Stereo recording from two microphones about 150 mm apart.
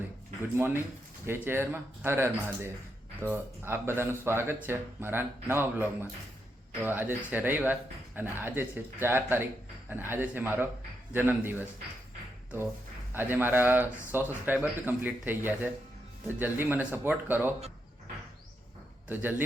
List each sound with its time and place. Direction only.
0.5 s speech: 15° right (ahead or behind)
13.1 s speech: 15° right (ahead or behind)
19.0 s a man's voice: 10° right (ahead or behind)